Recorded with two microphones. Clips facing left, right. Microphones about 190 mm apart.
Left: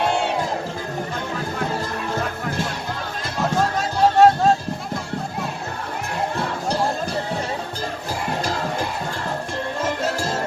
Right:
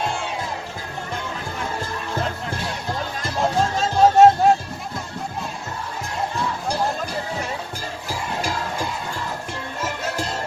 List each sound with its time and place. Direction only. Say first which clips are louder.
3.8 s music: right 2 dB; 20° right (ahead or behind)